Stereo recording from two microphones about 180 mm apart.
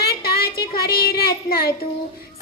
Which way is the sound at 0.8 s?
60° left (ahead or behind).